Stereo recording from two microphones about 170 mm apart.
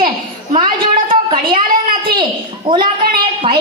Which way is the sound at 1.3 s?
30° right (ahead or behind).